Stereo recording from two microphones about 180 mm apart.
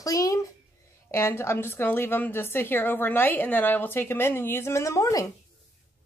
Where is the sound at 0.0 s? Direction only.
20° left (ahead or behind).